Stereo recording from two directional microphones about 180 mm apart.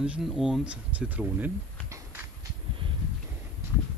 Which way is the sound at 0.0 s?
5° right (ahead or behind).